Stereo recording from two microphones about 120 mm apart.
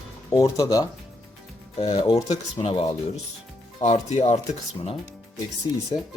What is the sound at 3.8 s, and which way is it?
Speech, 65° left (ahead or behind).